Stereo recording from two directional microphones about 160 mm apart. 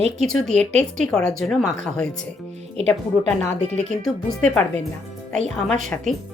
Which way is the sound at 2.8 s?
40° right (ahead or behind).